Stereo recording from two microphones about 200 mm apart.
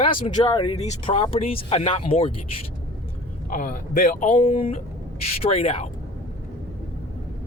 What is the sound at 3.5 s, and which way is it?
Speech, 40° left (ahead or behind).